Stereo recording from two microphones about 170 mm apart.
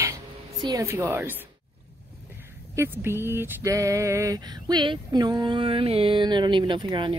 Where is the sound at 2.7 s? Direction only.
15° right (ahead or behind).